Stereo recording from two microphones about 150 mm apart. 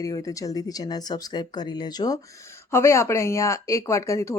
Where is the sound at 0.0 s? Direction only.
25° left (ahead or behind).